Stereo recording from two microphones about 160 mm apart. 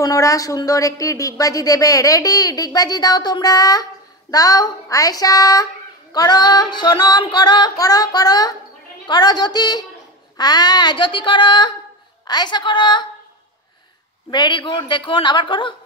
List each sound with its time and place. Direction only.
0.0 s speech: 20° left (ahead or behind)
14.3 s speech: 30° left (ahead or behind)